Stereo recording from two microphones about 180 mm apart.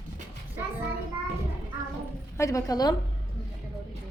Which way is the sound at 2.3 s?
15° left (ahead or behind).